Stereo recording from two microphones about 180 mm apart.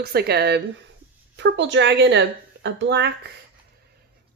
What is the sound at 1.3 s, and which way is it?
Speech, 80° right.